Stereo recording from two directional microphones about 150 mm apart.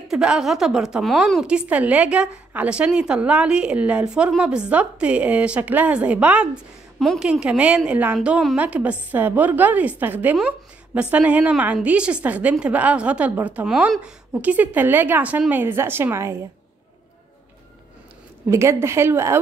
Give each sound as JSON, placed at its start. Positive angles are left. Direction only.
{"t": 0.1, "sound": "a woman's voice", "side_deg": -5}
{"t": 18.5, "sound": "a woman's voice", "side_deg": -20}